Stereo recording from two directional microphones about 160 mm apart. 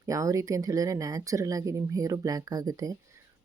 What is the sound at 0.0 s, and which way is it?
Speech, 20° right (ahead or behind).